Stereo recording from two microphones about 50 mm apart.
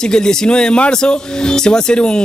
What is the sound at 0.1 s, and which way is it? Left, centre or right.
Speech, centre.